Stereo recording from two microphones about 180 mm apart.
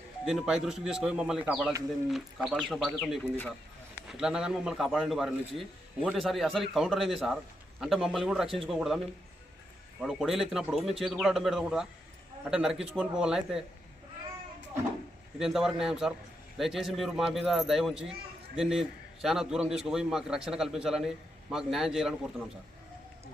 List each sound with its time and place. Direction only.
0.3 s a man's voice: 5° right (ahead or behind)
3.9 s a man's voice: 5° right (ahead or behind)
10.0 s a man's voice: 5° right (ahead or behind)
15.4 s a man's voice: centre (ahead or behind)